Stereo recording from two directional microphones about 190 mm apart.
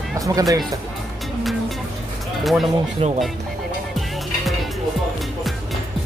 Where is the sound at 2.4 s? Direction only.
Centre (ahead or behind).